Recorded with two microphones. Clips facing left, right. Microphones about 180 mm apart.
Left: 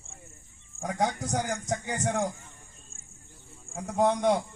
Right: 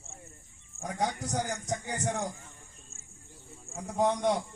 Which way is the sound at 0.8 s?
80° left.